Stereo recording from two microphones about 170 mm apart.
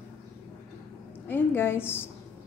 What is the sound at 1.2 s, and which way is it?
Speech, 10° left (ahead or behind).